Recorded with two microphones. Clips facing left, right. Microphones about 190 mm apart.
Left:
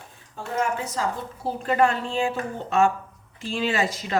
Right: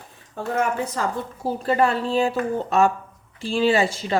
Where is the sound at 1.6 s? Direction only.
35° right (ahead or behind).